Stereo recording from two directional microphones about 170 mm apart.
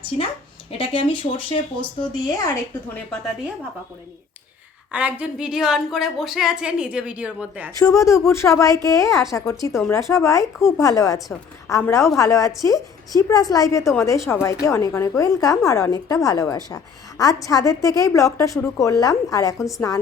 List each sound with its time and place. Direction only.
0.8 s a woman's voice: 30° left (ahead or behind)
4.9 s a woman's voice: 10° right (ahead or behind)
7.8 s a woman's voice: 20° left (ahead or behind)
19.5 s a woman's voice: centre (ahead or behind)